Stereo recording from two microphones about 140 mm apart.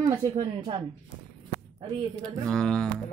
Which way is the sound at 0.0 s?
30° right (ahead or behind).